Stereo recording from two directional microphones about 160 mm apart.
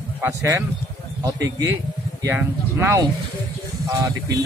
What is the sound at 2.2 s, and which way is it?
Speech, 15° right (ahead or behind).